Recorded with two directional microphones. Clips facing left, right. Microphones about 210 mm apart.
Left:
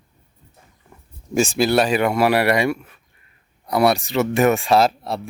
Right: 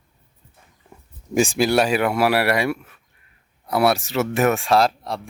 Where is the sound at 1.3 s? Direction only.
15° right (ahead or behind).